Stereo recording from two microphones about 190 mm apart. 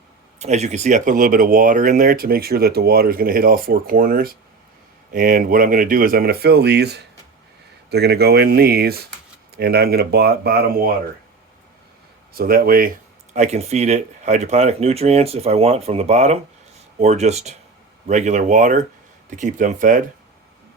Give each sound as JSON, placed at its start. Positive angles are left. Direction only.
{"t": 0.3, "sound": "speech", "side_deg": -35}
{"t": 12.3, "sound": "speech", "side_deg": -50}
{"t": 13.3, "sound": "speech", "side_deg": -35}